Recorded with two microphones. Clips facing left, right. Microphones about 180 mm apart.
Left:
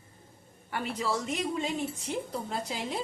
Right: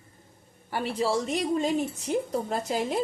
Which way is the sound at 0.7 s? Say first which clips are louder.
Right 5 dB; 30° right (ahead or behind).